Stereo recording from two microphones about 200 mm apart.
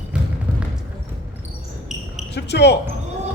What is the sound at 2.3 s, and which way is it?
Speech, 55° left (ahead or behind).